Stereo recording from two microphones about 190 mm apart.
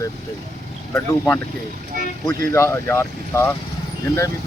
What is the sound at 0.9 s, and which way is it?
Speech, 15° left (ahead or behind).